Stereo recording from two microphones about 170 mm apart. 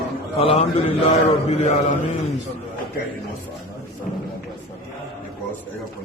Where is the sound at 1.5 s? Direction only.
40° left (ahead or behind).